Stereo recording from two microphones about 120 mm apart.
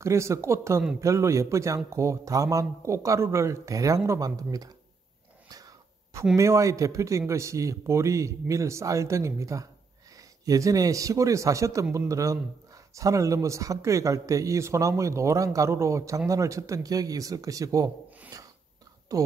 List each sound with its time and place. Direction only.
0.0 s speech: 25° right (ahead or behind)
5.5 s wheeze: 30° right (ahead or behind)
6.3 s speech: 25° right (ahead or behind)
18.3 s a sound: 30° right (ahead or behind)
19.1 s speech: 30° right (ahead or behind)